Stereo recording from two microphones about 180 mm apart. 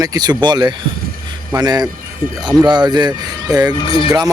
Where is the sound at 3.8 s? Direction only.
30° left (ahead or behind).